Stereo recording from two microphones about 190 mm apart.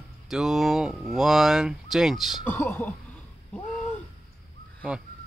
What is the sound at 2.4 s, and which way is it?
Speech, 10° left (ahead or behind).